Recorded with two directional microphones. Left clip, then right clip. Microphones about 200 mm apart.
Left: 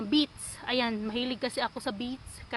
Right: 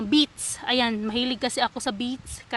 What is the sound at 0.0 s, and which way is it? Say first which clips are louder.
Speech: right 6 dB; 55° right (ahead or behind).